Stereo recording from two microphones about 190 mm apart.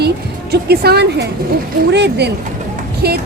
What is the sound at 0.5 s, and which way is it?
A woman's voice, 55° right (ahead or behind).